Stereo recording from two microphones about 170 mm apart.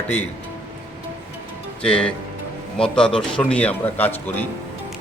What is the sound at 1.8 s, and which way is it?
A man's voice, 5° left (ahead or behind).